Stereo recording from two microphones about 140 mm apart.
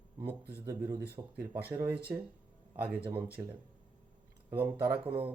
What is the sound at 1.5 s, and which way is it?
Speech, 90° right.